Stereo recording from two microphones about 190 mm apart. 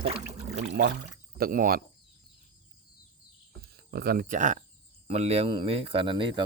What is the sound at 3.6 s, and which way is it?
Speech, 55° right (ahead or behind).